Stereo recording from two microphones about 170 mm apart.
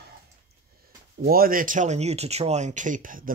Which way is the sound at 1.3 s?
55° right (ahead or behind).